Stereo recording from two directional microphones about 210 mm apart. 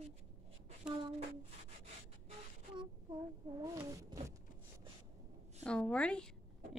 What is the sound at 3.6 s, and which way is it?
Cat, 15° right (ahead or behind).